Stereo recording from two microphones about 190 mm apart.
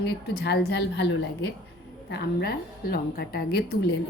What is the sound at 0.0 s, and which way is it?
A woman's voice, 60° left (ahead or behind).